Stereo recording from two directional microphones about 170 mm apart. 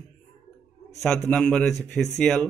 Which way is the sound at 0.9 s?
5° left (ahead or behind).